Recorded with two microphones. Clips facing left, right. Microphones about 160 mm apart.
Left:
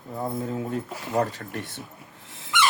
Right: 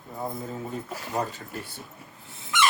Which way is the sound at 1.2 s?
75° left (ahead or behind).